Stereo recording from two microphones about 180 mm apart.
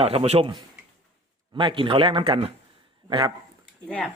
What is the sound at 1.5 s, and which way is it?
Speech, 25° right (ahead or behind).